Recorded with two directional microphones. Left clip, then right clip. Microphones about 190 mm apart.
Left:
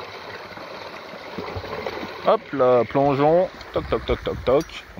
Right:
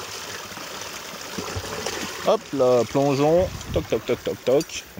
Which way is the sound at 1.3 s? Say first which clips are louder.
Left 1 dB; 10° right (ahead or behind).